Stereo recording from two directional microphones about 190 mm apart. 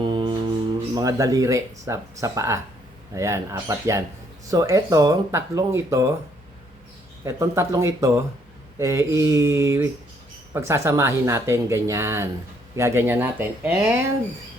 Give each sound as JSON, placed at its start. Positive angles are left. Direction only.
{"t": 0.1, "sound": "mantra", "side_deg": -25}
{"t": 0.9, "sound": "speech", "side_deg": -20}
{"t": 7.3, "sound": "speech", "side_deg": -15}